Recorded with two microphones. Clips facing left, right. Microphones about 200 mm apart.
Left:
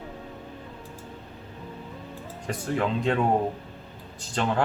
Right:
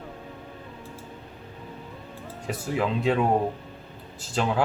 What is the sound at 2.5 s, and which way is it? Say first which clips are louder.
Speech: even; 5° right (ahead or behind).